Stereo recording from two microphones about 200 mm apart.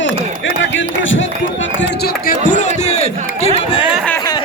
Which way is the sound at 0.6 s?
70° left (ahead or behind).